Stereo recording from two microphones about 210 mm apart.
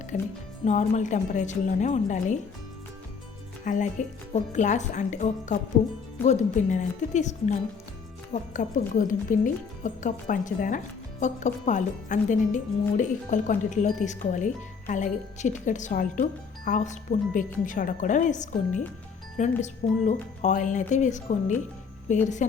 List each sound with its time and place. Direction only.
0.1 s speech: 35° left (ahead or behind)
3.6 s speech: 35° left (ahead or behind)